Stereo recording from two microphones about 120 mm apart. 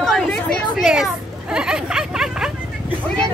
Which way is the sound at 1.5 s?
5° right (ahead or behind).